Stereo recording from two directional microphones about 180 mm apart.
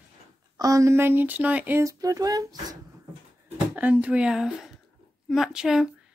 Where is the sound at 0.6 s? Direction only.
20° right (ahead or behind).